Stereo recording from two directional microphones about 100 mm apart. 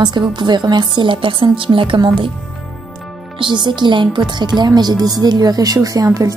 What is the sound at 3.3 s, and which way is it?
A woman's voice, 50° right (ahead or behind).